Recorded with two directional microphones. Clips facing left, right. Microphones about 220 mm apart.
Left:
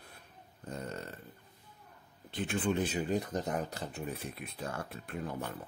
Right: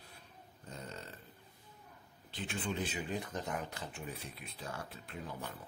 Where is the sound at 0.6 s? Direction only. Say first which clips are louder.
Left 7 dB; 55° left (ahead or behind).